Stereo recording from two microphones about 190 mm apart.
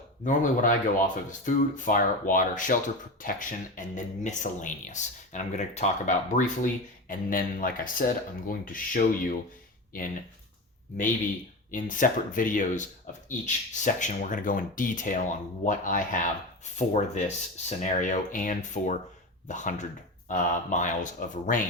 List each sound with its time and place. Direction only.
0.3 s speech: 45° left (ahead or behind)
11.7 s speech: 45° left (ahead or behind)